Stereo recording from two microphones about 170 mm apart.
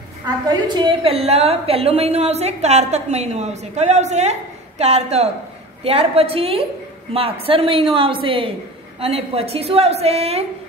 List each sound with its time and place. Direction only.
0.5 s a woman's voice: 25° right (ahead or behind)